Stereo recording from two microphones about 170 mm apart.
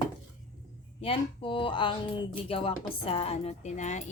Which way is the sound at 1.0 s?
30° left (ahead or behind).